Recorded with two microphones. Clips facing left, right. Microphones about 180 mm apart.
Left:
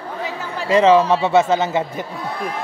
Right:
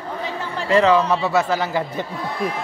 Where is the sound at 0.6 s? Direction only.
20° left (ahead or behind).